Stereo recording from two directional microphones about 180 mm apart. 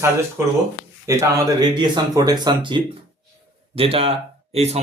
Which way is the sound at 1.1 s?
15° right (ahead or behind).